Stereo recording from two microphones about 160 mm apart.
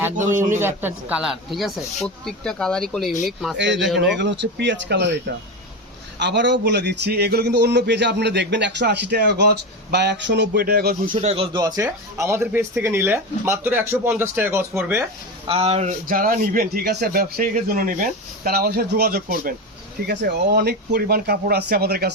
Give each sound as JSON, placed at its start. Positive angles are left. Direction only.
{"t": 0.3, "sound": "speech", "side_deg": -15}
{"t": 3.6, "sound": "a man's voice", "side_deg": -90}
{"t": 6.1, "sound": "a man's voice", "side_deg": -90}
{"t": 11.2, "sound": "speech", "side_deg": -40}
{"t": 15.4, "sound": "speech", "side_deg": -40}
{"t": 16.0, "sound": "a man's voice", "side_deg": -60}
{"t": 20.1, "sound": "speech", "side_deg": -85}